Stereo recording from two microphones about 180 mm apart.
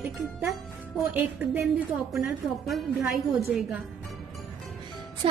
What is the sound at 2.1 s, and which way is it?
A woman's voice, centre (ahead or behind).